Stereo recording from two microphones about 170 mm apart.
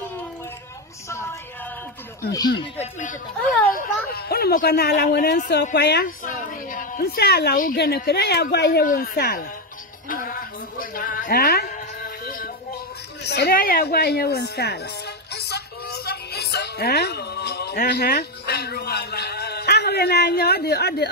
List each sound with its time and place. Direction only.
1.0 s a sound: 15° left (ahead or behind)
2.3 s speech: 25° left (ahead or behind)
2.8 s speech: 45° left (ahead or behind)
3.7 s speech: 65° left (ahead or behind)
6.2 s a woman's voice: 50° left (ahead or behind); by 8.8 s 75° left (ahead or behind)
8.8 s speech: 60° left (ahead or behind)
10.0 s music: 55° left (ahead or behind)
10.8 s a sound: 55° left (ahead or behind)
13.2 s a sound: 75° left (ahead or behind)